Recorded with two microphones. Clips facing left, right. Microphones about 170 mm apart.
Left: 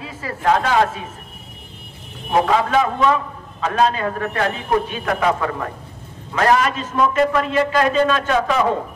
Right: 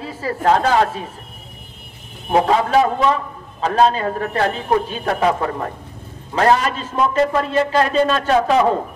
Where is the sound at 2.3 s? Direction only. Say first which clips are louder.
Right 1 dB; 30° right (ahead or behind).